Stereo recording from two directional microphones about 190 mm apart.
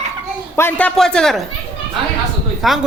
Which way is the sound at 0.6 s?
10° left (ahead or behind).